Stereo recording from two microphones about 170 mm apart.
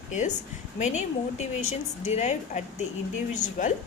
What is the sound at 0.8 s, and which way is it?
A woman's voice, 40° left (ahead or behind).